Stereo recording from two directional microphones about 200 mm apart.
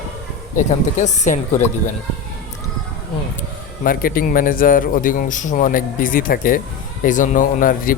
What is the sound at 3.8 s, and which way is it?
A man's voice, 45° left (ahead or behind).